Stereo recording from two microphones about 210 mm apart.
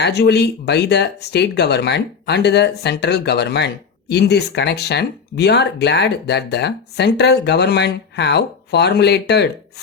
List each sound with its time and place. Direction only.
0.0 s speech: 55° left (ahead or behind)